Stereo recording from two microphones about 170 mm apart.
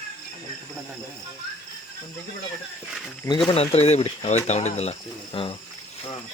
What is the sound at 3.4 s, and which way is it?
Speech, 35° left (ahead or behind).